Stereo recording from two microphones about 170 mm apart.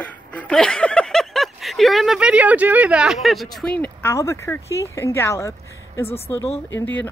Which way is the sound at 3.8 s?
15° left (ahead or behind).